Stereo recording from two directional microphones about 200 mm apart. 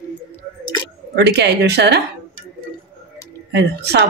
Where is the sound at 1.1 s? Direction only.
55° right (ahead or behind).